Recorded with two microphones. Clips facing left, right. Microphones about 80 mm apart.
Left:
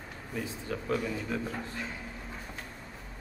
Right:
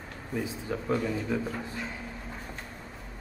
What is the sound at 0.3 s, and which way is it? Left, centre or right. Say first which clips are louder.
Speech: right 3 dB; centre.